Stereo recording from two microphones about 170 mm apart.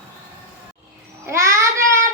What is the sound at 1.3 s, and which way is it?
Speech, 15° right (ahead or behind).